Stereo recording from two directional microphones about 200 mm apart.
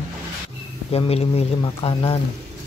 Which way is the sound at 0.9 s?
30° left (ahead or behind).